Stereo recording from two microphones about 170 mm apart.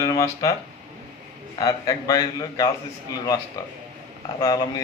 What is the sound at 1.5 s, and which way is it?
A man's voice, 20° left (ahead or behind).